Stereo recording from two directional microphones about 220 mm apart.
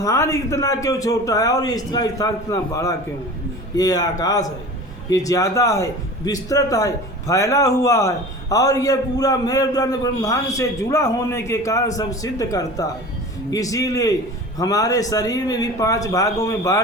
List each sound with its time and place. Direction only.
0.0 s a man's voice: 15° left (ahead or behind)